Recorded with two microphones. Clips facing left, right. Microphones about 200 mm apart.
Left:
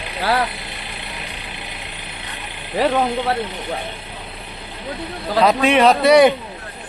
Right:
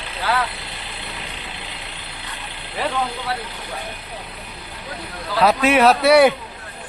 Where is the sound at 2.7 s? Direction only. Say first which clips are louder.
Left 7 dB; 40° left (ahead or behind).